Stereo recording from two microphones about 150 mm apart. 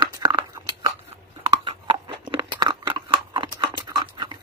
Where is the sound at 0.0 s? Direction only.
30° right (ahead or behind).